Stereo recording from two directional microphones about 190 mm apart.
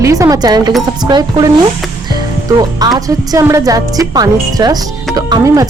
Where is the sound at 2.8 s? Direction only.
20° right (ahead or behind).